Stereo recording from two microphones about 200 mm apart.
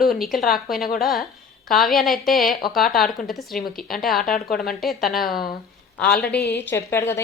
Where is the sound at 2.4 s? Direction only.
45° left (ahead or behind).